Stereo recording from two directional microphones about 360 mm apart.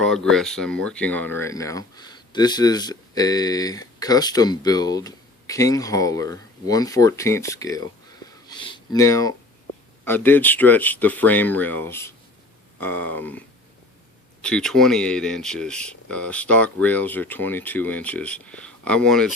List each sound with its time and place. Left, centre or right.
0.1 s speech: centre
14.4 s speech: centre